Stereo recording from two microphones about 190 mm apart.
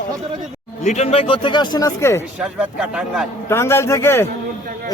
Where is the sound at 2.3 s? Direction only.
5° right (ahead or behind).